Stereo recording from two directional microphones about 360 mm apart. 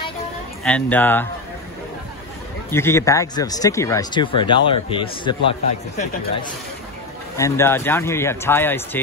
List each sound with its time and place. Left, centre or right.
0.7 s speech: centre
2.7 s speech: centre